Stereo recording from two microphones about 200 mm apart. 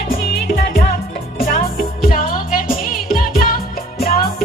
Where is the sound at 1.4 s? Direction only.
45° left (ahead or behind).